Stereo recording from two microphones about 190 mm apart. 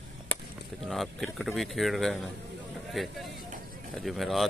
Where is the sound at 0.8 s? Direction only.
Centre (ahead or behind).